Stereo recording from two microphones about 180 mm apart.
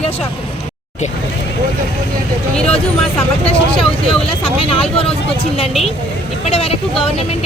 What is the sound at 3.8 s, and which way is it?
Speech, 30° left (ahead or behind).